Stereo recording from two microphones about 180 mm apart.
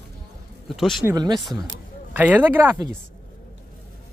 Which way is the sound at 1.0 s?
20° right (ahead or behind).